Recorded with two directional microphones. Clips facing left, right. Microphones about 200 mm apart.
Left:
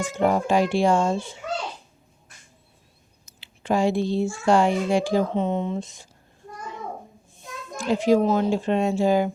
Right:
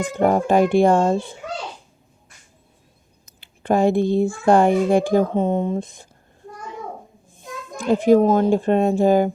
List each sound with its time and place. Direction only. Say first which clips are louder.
0.0 s a child's voice: right 3 dB; 55° right (ahead or behind)
3.2 s a child's voice: right 4 dB; 55° right (ahead or behind)
7.8 s a child's voice: right 5 dB; 55° right (ahead or behind)